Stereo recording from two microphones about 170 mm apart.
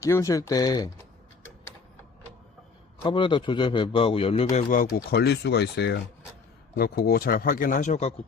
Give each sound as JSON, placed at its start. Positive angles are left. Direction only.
{"t": 0.0, "sound": "a man's voice", "side_deg": 15}
{"t": 3.0, "sound": "a man's voice", "side_deg": 30}
{"t": 4.5, "sound": "speech", "side_deg": 55}
{"t": 6.7, "sound": "speech", "side_deg": 65}